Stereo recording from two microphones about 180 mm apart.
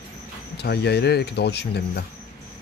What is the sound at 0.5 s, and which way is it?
Speech, 65° left (ahead or behind).